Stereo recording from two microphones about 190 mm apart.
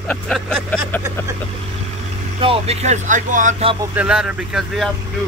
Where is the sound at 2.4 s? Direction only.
30° right (ahead or behind).